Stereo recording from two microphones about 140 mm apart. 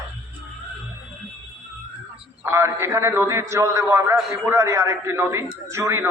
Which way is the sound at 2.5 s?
20° right (ahead or behind).